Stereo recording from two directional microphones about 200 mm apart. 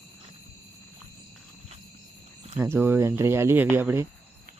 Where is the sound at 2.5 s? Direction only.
10° right (ahead or behind).